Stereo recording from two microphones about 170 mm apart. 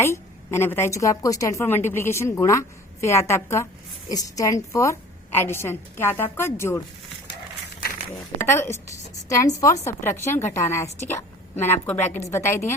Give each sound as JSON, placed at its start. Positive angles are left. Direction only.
{"t": 0.0, "sound": "a woman's voice", "side_deg": 15}
{"t": 8.4, "sound": "a woman's voice", "side_deg": 15}